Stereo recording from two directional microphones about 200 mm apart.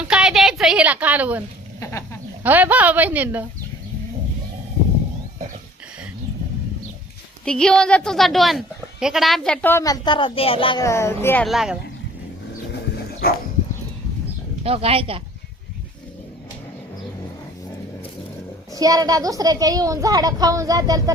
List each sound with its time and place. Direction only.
0.0 s a woman's voice: 5° right (ahead or behind)
1.8 s speech: 15° left (ahead or behind)
2.4 s speech: 10° right (ahead or behind)
7.4 s speech: 5° left (ahead or behind)
11.4 s speech: centre (ahead or behind)
14.6 s speech: 30° right (ahead or behind)
18.7 s speech: 15° right (ahead or behind)